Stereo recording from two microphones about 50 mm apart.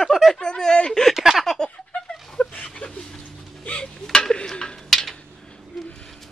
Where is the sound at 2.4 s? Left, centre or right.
Left.